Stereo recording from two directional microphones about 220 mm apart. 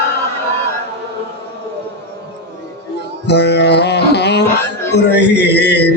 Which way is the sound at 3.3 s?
50° left (ahead or behind).